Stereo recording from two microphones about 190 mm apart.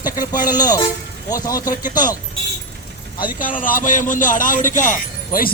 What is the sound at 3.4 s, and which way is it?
A man's voice, 45° left (ahead or behind).